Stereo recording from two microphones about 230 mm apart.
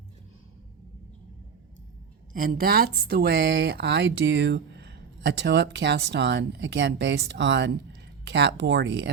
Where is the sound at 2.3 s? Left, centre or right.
Right.